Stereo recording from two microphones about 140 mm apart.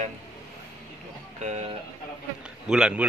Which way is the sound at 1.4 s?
55° right (ahead or behind).